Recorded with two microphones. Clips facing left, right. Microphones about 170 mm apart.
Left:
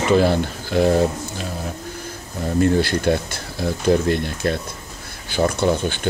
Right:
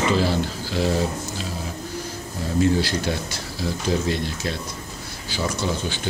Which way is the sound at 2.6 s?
55° left (ahead or behind).